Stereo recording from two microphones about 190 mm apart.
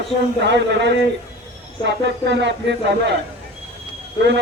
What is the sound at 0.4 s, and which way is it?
Speech, 65° right (ahead or behind).